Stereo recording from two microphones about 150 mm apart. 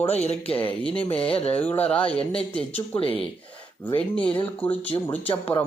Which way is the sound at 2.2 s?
40° left (ahead or behind).